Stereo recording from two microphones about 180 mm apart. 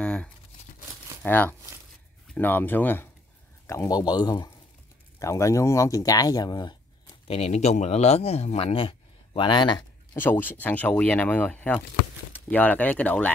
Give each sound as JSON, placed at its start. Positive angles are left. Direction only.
{"t": 0.0, "sound": "crumpling", "side_deg": 5}
{"t": 1.2, "sound": "speech", "side_deg": 10}
{"t": 7.2, "sound": "speech", "side_deg": 35}
{"t": 10.1, "sound": "speech", "side_deg": 10}